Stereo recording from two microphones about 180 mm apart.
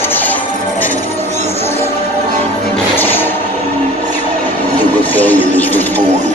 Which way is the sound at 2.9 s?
10° left (ahead or behind).